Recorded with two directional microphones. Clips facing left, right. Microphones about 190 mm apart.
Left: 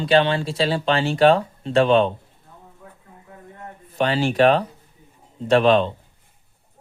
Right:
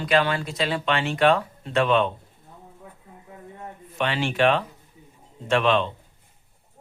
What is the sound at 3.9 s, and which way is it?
Speech, 35° left (ahead or behind).